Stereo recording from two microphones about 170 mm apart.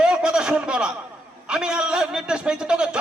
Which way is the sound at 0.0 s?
5° right (ahead or behind).